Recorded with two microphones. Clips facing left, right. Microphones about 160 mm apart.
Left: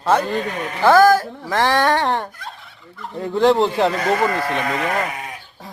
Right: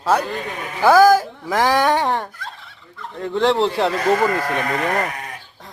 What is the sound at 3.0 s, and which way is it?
Speech, 10° left (ahead or behind).